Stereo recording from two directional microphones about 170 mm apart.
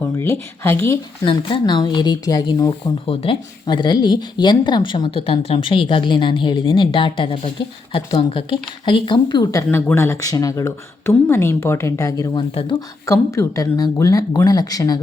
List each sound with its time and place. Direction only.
0.0 s speech: 15° left (ahead or behind)
1.2 s speech: 30° left (ahead or behind)
12.7 s speech: 15° left (ahead or behind)